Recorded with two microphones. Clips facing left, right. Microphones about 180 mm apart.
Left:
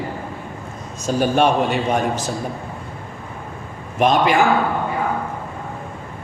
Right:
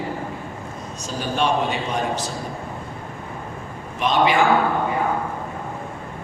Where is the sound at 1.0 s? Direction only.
50° left (ahead or behind).